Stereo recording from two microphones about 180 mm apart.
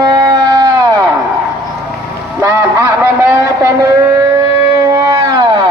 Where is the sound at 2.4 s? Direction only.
15° right (ahead or behind).